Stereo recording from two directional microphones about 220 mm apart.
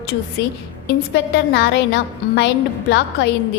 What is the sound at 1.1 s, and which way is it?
A woman's voice, 50° left (ahead or behind).